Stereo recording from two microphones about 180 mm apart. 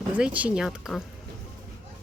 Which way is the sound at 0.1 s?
10° right (ahead or behind).